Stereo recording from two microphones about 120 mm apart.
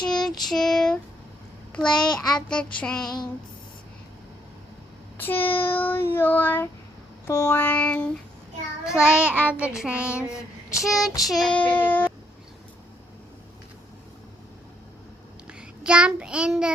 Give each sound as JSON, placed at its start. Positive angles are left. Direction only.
{"t": 0.1, "sound": "child singing", "side_deg": 5}
{"t": 2.0, "sound": "child singing", "side_deg": 5}
{"t": 5.2, "sound": "child singing", "side_deg": 15}
{"t": 8.8, "sound": "child singing", "side_deg": -5}
{"t": 11.5, "sound": "child singing", "side_deg": 10}
{"t": 15.4, "sound": "a child's voice", "side_deg": -10}